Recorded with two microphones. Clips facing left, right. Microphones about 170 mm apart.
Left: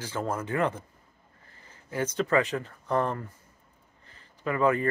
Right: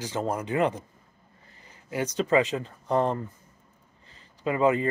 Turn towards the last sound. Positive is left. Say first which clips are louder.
# right 2 dB
turn(degrees=-20)  # may be behind; listen again after turning